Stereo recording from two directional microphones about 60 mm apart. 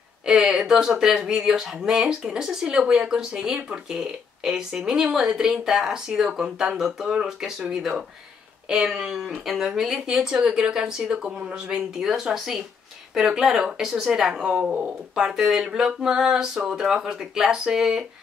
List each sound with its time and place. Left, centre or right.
0.3 s speech: centre
14.6 s speech: right
15.1 s speech: centre